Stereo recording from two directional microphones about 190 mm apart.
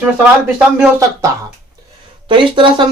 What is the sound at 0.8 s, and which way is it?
Speech, 15° right (ahead or behind).